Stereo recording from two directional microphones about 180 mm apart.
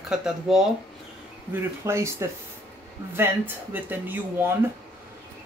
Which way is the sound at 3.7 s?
10° right (ahead or behind).